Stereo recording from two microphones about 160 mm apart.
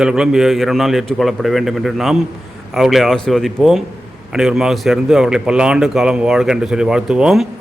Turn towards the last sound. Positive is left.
turn(degrees=-5)  # may be behind; listen again after turning